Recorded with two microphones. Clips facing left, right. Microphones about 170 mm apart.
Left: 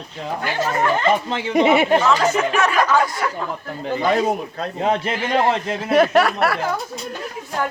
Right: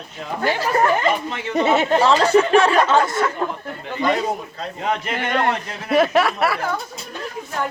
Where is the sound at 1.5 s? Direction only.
10° left (ahead or behind).